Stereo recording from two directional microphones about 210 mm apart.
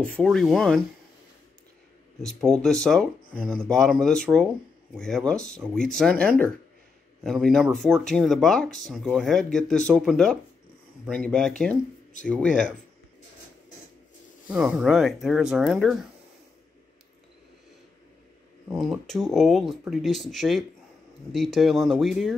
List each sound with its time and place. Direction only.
0.0 s speech: 5° left (ahead or behind)
2.2 s speech: 5° left (ahead or behind)
14.5 s speech: 5° right (ahead or behind)
18.7 s speech: centre (ahead or behind)